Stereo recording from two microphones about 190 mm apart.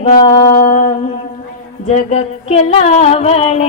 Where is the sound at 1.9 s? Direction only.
35° left (ahead or behind).